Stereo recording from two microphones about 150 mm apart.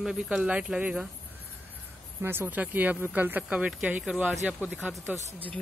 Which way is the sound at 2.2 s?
15° right (ahead or behind).